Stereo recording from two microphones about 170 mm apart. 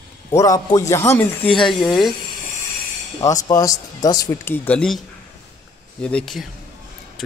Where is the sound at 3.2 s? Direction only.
20° left (ahead or behind).